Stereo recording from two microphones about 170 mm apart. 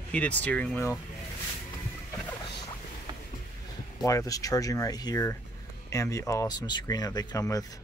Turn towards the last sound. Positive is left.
turn(degrees=20)  # may be behind; listen again after turning